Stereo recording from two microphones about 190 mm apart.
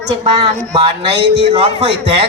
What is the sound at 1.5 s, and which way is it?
Speech, 30° right (ahead or behind).